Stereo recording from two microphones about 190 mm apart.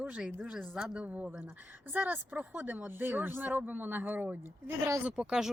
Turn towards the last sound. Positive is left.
turn(degrees=-5)  # may be behind; listen again after turning